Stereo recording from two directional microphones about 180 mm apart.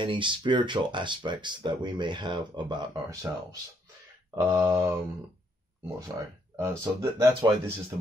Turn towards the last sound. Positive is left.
turn(degrees=-20)  # may be behind; listen again after turning